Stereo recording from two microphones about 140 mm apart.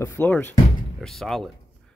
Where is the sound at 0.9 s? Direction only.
Centre (ahead or behind).